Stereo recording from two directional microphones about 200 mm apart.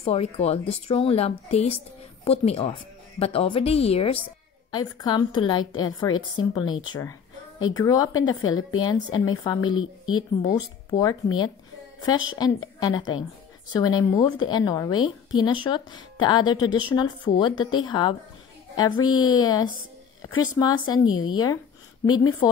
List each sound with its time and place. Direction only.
0.0 s a woman's voice: 30° left (ahead or behind)
8.3 s a woman's voice: 90° left
8.7 s a woman's voice: 20° left (ahead or behind)
21.1 s a woman's voice: 90° left
22.0 s a woman's voice: 20° left (ahead or behind)